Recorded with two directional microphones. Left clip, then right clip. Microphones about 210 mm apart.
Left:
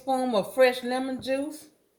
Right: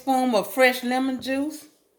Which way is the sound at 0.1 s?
35° right (ahead or behind).